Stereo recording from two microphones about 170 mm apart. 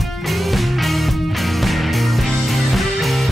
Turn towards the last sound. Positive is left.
turn(degrees=0)  # may be behind; listen again after turning